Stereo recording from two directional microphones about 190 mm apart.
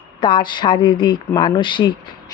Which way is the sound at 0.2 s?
25° left (ahead or behind).